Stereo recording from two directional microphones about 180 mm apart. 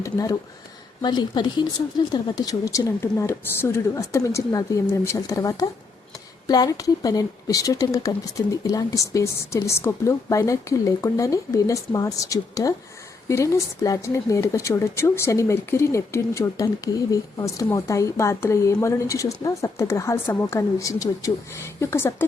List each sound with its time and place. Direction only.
0.0 s speech: 20° left (ahead or behind)